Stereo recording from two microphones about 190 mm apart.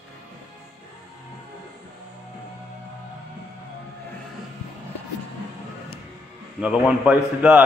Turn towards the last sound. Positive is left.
turn(degrees=-5)  # may be behind; listen again after turning